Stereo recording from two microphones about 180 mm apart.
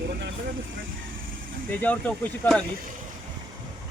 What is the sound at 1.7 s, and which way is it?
Speech, 10° left (ahead or behind).